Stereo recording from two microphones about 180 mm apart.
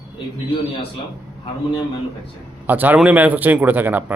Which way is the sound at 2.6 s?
10° right (ahead or behind).